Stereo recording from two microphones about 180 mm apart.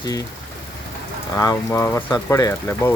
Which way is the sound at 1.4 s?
15° left (ahead or behind).